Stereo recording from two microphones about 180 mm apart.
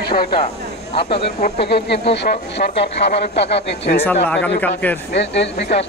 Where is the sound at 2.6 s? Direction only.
50° left (ahead or behind).